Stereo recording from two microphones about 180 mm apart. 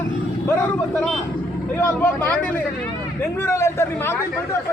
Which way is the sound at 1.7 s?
10° left (ahead or behind).